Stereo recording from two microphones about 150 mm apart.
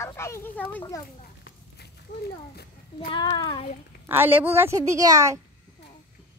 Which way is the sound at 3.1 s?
30° left (ahead or behind).